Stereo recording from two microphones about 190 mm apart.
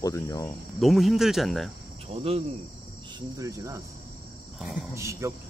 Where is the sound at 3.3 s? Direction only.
15° right (ahead or behind).